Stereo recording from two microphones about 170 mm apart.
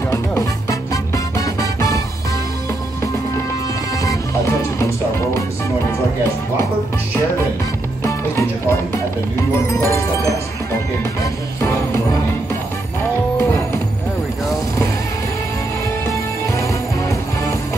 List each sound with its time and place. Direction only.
0.1 s music: 15° left (ahead or behind)
4.0 s music: 20° left (ahead or behind)
8.0 s music: 15° left (ahead or behind)
11.6 s music: 20° left (ahead or behind)
13.4 s music: 15° left (ahead or behind)
16.1 s music: 20° left (ahead or behind)